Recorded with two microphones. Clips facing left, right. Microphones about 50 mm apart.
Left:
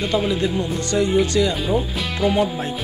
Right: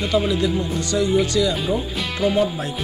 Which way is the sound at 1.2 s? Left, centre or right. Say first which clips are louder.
Left 1 dB; left.